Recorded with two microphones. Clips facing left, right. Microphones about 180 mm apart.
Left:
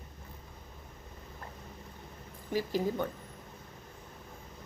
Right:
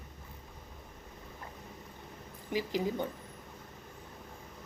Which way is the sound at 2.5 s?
15° right (ahead or behind).